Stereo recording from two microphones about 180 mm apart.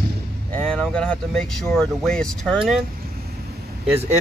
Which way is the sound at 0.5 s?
5° left (ahead or behind).